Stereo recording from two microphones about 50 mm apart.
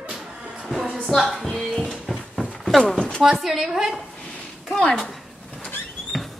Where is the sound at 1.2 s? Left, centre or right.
Centre.